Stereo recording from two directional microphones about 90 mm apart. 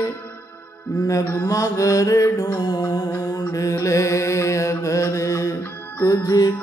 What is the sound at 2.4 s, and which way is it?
Music, 45° left (ahead or behind).